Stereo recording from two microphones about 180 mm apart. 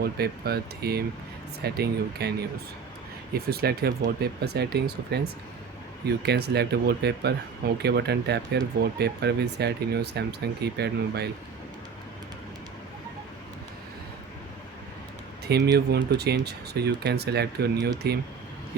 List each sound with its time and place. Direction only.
0.0 s speech: 60° right (ahead or behind)
3.3 s speech: 60° right (ahead or behind)
6.2 s speech: 65° right (ahead or behind)
15.4 s speech: 65° right (ahead or behind)